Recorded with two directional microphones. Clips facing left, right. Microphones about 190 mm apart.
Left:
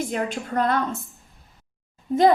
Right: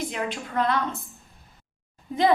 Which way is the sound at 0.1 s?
45° left (ahead or behind).